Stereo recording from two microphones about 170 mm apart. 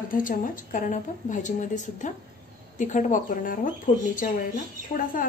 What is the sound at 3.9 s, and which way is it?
Speech, 40° left (ahead or behind).